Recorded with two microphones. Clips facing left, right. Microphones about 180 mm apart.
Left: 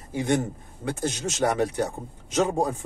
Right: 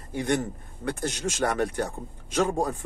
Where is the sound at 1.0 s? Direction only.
20° left (ahead or behind).